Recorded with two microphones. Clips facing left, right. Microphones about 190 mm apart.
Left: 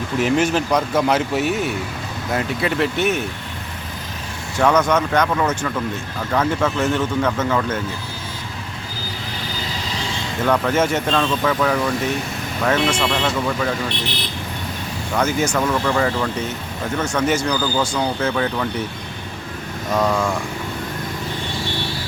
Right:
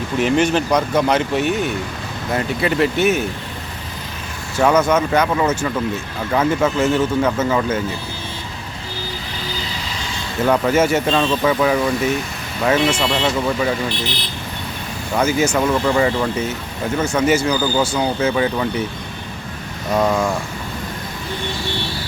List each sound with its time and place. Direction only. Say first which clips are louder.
0.2 s speech: right 2 dB; centre (ahead or behind)
4.6 s speech: right 2 dB; 5° right (ahead or behind)
10.4 s speech: right 3 dB; 10° right (ahead or behind)
15.1 s speech: right 3 dB; 10° right (ahead or behind)
20.0 s speech: right 2 dB; 15° right (ahead or behind)